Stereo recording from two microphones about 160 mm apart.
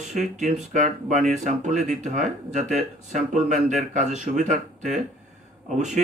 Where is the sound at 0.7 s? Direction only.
50° right (ahead or behind).